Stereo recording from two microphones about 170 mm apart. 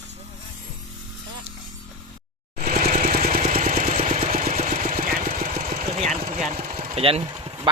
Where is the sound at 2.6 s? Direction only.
60° right (ahead or behind).